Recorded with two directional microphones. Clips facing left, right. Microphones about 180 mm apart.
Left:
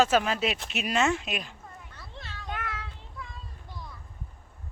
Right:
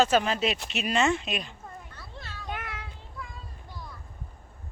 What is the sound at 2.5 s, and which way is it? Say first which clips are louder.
Child singing: left 1 dB; 15° right (ahead or behind).